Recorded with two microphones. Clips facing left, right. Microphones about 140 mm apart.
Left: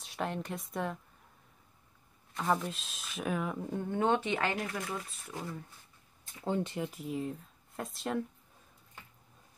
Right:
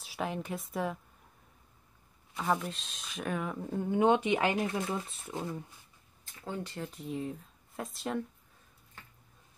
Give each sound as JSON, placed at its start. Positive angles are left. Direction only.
{"t": 0.0, "sound": "speech", "side_deg": -5}
{"t": 2.3, "sound": "speech", "side_deg": 0}
{"t": 4.6, "sound": "speech", "side_deg": -25}
{"t": 6.4, "sound": "speech", "side_deg": 25}
{"t": 6.8, "sound": "speech", "side_deg": 5}